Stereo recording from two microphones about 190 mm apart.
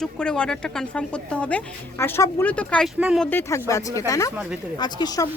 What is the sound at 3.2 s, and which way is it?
Speech, 10° left (ahead or behind).